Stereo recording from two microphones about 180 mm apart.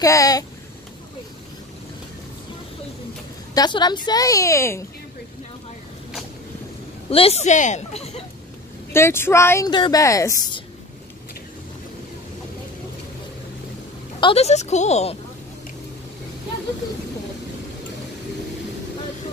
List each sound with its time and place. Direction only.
0.0 s a woman's voice: 20° left (ahead or behind)
3.5 s a woman's voice: 25° left (ahead or behind)
7.1 s speech: 35° left (ahead or behind)
8.9 s speech: 15° left (ahead or behind)
14.2 s speech: 35° left (ahead or behind)